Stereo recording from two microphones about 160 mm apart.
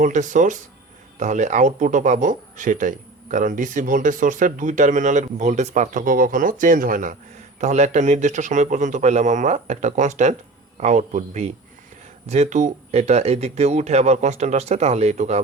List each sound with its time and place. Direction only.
0.0 s speech: 50° right (ahead or behind)